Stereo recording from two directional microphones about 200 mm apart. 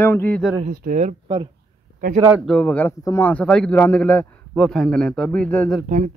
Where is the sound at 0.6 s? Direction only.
45° right (ahead or behind).